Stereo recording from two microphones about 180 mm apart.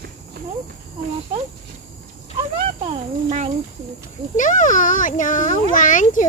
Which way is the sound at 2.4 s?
30° right (ahead or behind).